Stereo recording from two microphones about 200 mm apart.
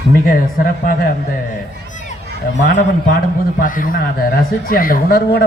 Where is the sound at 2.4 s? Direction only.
50° left (ahead or behind).